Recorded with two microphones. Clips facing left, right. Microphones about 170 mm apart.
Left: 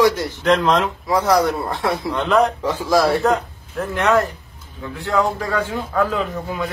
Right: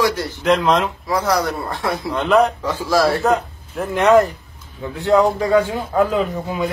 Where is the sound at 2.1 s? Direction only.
5° right (ahead or behind).